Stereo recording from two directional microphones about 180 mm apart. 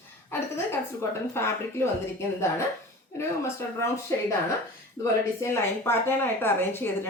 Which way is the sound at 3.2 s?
15° left (ahead or behind).